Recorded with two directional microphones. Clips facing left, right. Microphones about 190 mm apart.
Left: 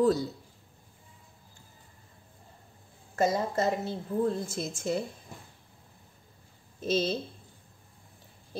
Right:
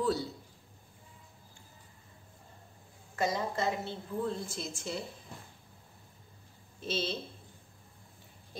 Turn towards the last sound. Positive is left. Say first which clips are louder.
# left 7 dB
turn(degrees=45)  # may be behind; listen again after turning